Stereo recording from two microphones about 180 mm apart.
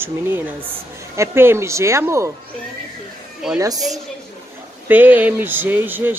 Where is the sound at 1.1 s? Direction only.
15° right (ahead or behind).